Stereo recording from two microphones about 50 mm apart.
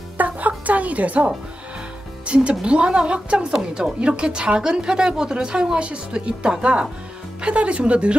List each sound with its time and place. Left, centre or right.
0.2 s music: right
2.2 s speech: right
3.5 s a woman's voice: centre
4.2 s speech: centre